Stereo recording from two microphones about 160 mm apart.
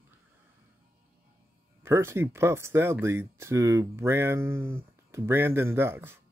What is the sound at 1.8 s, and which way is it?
Speech, 15° right (ahead or behind).